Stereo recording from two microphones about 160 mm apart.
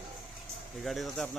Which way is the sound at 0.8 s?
Centre (ahead or behind).